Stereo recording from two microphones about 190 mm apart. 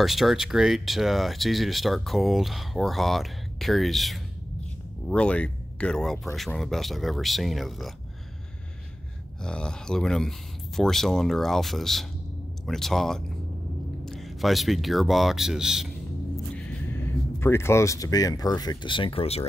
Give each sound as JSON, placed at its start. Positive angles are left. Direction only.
{"t": 0.0, "sound": "speech", "side_deg": 0}
{"t": 9.4, "sound": "speech", "side_deg": 5}
{"t": 16.5, "sound": "speech", "side_deg": 10}